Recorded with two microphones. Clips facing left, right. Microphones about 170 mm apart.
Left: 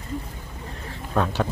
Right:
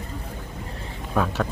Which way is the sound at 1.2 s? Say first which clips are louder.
Even; 5° right (ahead or behind).